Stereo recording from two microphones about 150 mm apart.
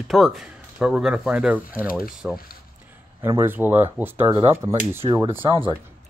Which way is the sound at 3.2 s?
15° right (ahead or behind).